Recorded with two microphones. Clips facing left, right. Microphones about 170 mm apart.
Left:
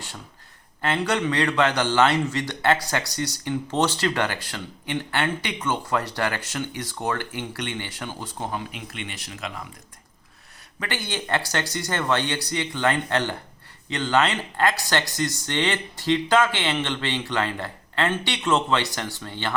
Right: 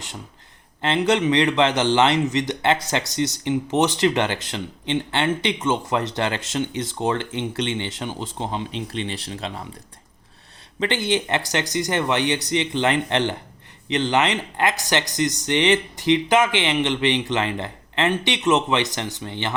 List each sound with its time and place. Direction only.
0.8 s a man's voice: 20° right (ahead or behind)
10.8 s a man's voice: 25° right (ahead or behind)